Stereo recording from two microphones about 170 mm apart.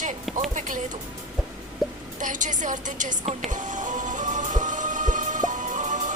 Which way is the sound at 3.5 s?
45° right (ahead or behind).